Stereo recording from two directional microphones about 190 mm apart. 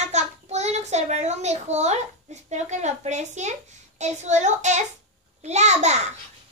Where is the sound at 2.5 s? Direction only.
35° right (ahead or behind).